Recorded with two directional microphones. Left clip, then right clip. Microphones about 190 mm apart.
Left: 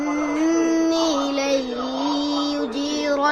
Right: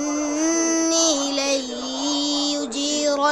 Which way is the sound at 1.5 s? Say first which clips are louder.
Left 2 dB; 90° right.